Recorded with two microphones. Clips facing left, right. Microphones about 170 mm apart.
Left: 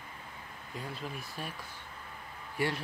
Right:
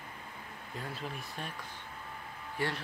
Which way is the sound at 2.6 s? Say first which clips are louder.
Left 3 dB; 10° left (ahead or behind).